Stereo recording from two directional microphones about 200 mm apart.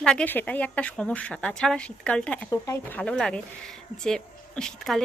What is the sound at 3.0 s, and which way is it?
Speech, 5° left (ahead or behind).